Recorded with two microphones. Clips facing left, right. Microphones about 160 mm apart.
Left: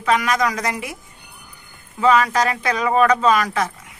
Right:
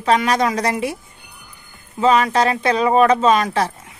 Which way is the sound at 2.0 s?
25° right (ahead or behind).